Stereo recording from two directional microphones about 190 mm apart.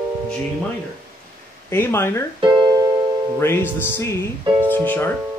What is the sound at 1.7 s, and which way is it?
Speech, 10° left (ahead or behind).